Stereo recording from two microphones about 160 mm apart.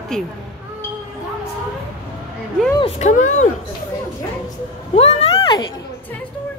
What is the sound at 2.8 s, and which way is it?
Speech, 45° left (ahead or behind).